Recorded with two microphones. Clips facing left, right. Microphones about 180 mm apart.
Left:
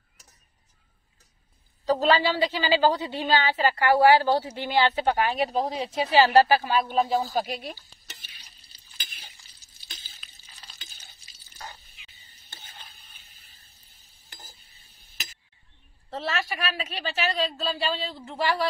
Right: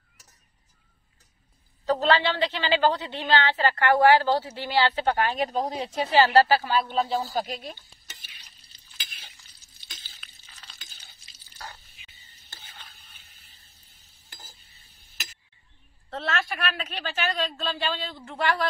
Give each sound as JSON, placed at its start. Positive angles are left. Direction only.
{"t": 1.9, "sound": "a woman's voice", "side_deg": 10}
{"t": 6.1, "sound": "a woman's voice", "side_deg": 10}
{"t": 10.4, "sound": "stir", "side_deg": 10}
{"t": 12.4, "sound": "stir", "side_deg": 20}
{"t": 16.1, "sound": "a man's voice", "side_deg": 5}